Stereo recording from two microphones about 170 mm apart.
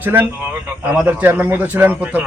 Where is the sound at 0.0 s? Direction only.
10° right (ahead or behind).